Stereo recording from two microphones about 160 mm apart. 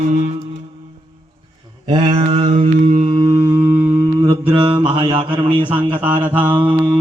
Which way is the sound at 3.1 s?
20° right (ahead or behind).